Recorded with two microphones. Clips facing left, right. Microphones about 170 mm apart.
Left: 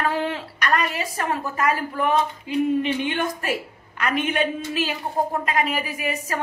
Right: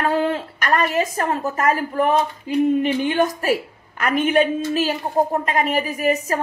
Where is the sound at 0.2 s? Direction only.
45° right (ahead or behind).